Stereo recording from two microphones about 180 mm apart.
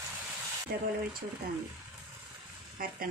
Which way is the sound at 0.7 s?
55° right (ahead or behind).